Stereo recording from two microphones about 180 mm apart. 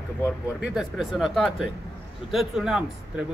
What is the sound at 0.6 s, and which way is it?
A man's voice, centre (ahead or behind).